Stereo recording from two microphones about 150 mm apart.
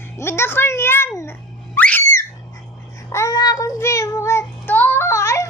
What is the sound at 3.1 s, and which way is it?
Child singing, 20° left (ahead or behind).